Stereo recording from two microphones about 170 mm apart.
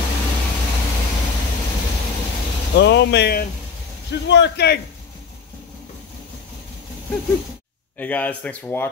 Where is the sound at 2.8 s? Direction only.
90° left.